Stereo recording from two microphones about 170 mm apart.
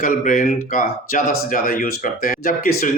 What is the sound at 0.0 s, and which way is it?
Speech, 55° left (ahead or behind).